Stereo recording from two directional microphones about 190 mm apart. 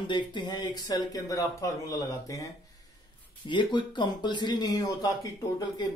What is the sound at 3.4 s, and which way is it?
A man's voice, 25° left (ahead or behind).